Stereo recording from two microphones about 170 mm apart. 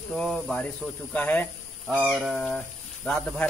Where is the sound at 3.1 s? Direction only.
10° left (ahead or behind).